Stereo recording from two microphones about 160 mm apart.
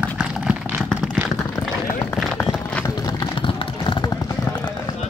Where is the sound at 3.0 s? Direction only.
25° left (ahead or behind).